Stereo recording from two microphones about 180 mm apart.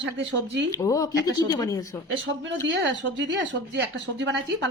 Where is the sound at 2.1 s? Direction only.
90° right.